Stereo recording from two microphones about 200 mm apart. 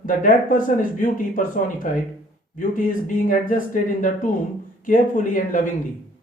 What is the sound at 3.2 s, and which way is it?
Speech, 40° left (ahead or behind).